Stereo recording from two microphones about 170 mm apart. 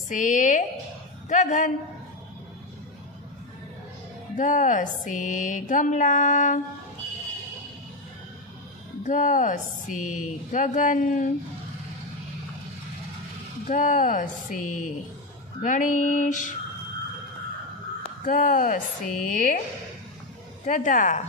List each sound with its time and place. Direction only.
0.1 s speech: 50° left (ahead or behind)
4.4 s speech: 50° left (ahead or behind)
9.0 s speech: 50° left (ahead or behind)
13.7 s speech: 50° left (ahead or behind)
18.2 s speech: 55° left (ahead or behind)
20.6 s speech: 50° left (ahead or behind)